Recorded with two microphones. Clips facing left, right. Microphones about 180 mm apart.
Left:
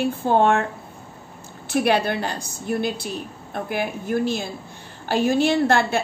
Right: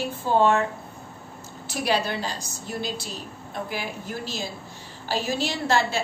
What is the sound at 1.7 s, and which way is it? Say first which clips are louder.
A woman's voice: left 5 dB; 60° left (ahead or behind).